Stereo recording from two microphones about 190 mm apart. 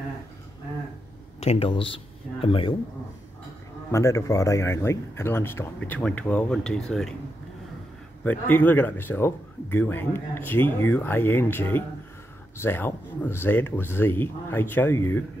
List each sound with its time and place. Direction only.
1.4 s speech: 30° left (ahead or behind)
3.9 s speech: 15° left (ahead or behind)
8.2 s speech: 10° left (ahead or behind)